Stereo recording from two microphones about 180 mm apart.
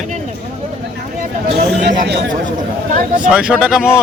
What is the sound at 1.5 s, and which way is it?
Speech, 70° right (ahead or behind).